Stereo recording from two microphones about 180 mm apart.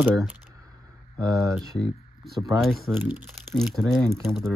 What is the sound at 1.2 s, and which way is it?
Speech, 20° right (ahead or behind).